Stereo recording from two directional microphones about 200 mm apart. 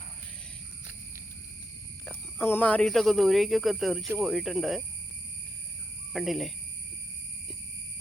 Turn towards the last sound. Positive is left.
turn(degrees=0)  # may be behind; listen again after turning